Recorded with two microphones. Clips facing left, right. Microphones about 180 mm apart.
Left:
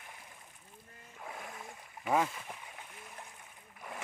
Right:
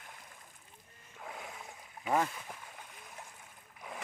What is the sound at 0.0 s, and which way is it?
Rowboat, 5° left (ahead or behind).